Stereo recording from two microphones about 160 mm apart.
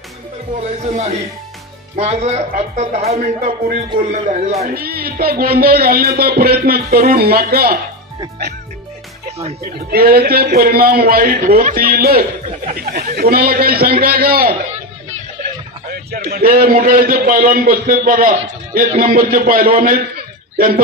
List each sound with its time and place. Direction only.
0.6 s music: 45° right (ahead or behind)
4.7 s speech: 70° right (ahead or behind)
9.8 s speech: 70° right (ahead or behind)
15.9 s a man's voice: 70° right (ahead or behind)